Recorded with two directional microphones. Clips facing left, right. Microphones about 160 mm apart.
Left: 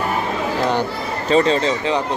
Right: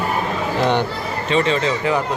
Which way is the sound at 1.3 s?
35° left (ahead or behind).